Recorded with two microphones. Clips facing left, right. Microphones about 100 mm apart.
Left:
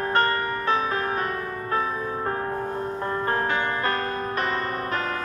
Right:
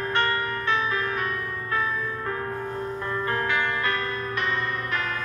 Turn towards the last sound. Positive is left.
turn(degrees=40)  # may be behind; listen again after turning